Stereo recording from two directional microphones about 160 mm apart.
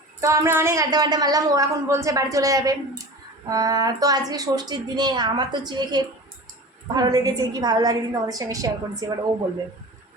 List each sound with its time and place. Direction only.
0.2 s a woman's voice: 20° right (ahead or behind)